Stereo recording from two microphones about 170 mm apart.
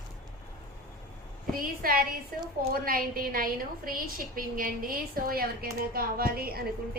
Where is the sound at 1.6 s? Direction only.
60° right (ahead or behind).